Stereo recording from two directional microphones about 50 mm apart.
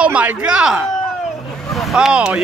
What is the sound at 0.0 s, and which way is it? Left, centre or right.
Speech, right.